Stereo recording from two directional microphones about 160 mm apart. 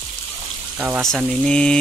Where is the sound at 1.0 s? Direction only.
Centre (ahead or behind).